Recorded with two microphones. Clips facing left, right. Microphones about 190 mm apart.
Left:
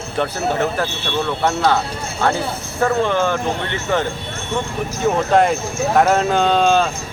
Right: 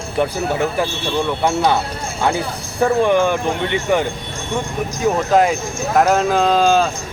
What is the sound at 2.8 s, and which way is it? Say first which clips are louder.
Speech: right 3 dB; 15° right (ahead or behind).